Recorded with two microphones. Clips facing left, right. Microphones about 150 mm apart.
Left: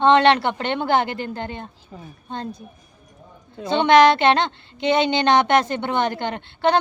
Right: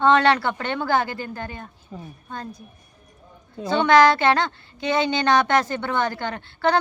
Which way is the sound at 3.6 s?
20° left (ahead or behind).